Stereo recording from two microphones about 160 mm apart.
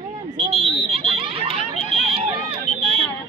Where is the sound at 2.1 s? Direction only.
35° right (ahead or behind).